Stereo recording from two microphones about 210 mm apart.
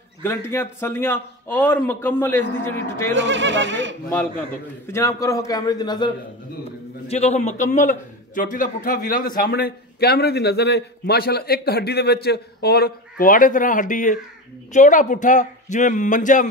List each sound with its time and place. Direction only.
0.2 s a man's voice: 10° left (ahead or behind)
3.2 s speech: 60° right (ahead or behind)
4.8 s a man's voice: 15° left (ahead or behind)
7.1 s a man's voice: 30° left (ahead or behind)